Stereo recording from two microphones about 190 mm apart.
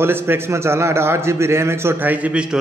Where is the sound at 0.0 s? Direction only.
10° right (ahead or behind).